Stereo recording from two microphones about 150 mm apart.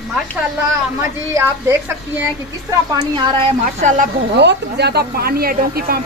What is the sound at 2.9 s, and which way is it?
Speech, 30° right (ahead or behind).